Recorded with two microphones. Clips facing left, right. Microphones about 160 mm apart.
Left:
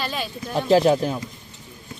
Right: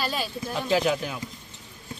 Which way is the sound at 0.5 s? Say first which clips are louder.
Left 7 dB; 35° left (ahead or behind).